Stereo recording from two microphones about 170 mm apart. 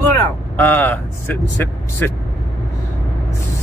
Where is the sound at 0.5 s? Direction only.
10° left (ahead or behind).